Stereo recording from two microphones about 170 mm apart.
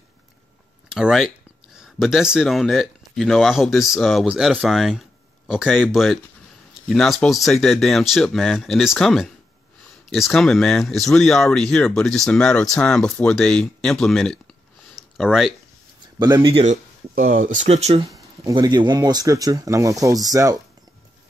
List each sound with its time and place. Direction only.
0.8 s speech: 5° right (ahead or behind)
15.0 s a sound: centre (ahead or behind)
16.4 s speech: 35° right (ahead or behind)
17.1 s speech: 50° right (ahead or behind)
18.1 s speech: 20° right (ahead or behind)